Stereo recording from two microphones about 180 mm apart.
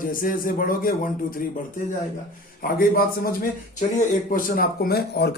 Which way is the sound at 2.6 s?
55° left (ahead or behind).